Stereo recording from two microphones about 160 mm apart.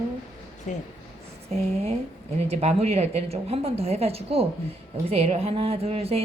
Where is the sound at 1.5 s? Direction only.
40° right (ahead or behind).